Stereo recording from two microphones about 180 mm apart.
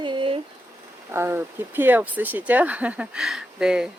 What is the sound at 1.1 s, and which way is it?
Speech, 15° right (ahead or behind).